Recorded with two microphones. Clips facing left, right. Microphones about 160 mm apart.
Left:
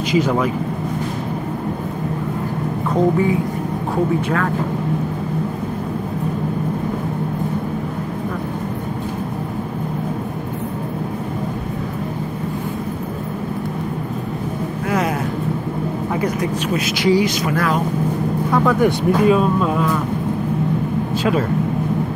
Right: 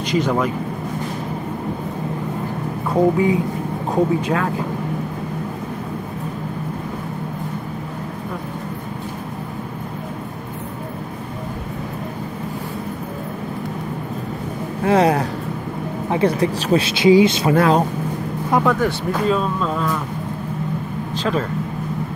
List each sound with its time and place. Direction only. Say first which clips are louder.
0.1 s speech: left 1 dB; centre (ahead or behind)
2.9 s music: right 1 dB; 15° right (ahead or behind)
3.9 s speech: right 1 dB; 20° right (ahead or behind)
14.9 s speech: right 6 dB; 30° right (ahead or behind)
18.8 s speech: left 5 dB; 15° left (ahead or behind)
21.2 s speech: left 2 dB; 10° left (ahead or behind)